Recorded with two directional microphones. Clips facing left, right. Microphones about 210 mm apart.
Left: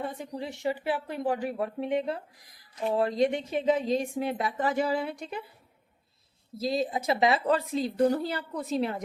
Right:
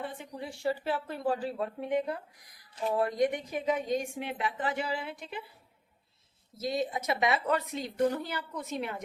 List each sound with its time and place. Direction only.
0.3 s a woman's voice: 20° left (ahead or behind); by 5.4 s 40° left (ahead or behind)
6.6 s a woman's voice: 30° left (ahead or behind)